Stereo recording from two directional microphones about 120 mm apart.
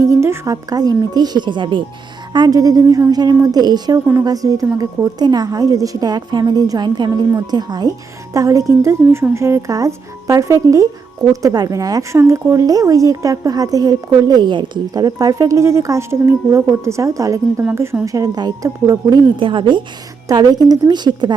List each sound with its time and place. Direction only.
0.0 s a woman's voice: 25° right (ahead or behind)
19.4 s a woman's voice: 45° right (ahead or behind)